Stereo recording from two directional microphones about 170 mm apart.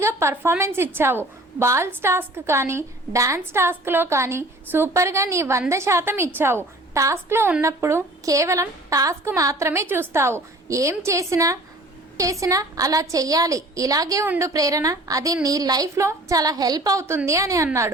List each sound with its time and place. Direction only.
0.0 s a woman's voice: 15° right (ahead or behind)